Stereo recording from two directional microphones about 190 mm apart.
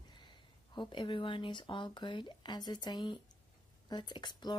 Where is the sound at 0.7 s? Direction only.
25° left (ahead or behind).